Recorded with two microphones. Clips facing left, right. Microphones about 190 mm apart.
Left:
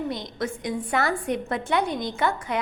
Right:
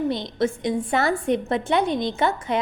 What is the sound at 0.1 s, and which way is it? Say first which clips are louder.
A woman's voice: right 6 dB; 25° right (ahead or behind).